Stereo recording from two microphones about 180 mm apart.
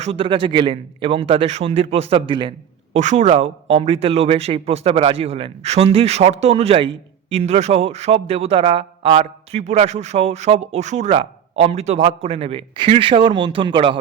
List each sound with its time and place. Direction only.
0.0 s speech: 30° right (ahead or behind)
2.9 s speech: 40° right (ahead or behind)